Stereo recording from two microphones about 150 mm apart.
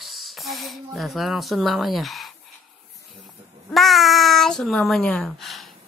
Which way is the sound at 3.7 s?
Centre (ahead or behind).